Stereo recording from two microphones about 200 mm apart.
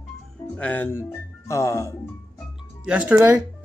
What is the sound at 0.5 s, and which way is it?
Speech, 10° left (ahead or behind).